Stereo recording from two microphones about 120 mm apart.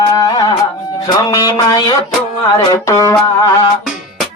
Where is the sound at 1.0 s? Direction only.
30° left (ahead or behind).